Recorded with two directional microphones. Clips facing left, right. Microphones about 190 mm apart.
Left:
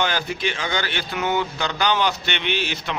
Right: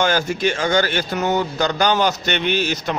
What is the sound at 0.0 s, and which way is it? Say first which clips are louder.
A man's voice: right 5 dB; 45° right (ahead or behind).